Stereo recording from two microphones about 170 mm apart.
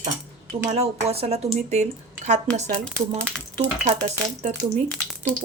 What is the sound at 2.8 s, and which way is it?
Speech, 5° left (ahead or behind).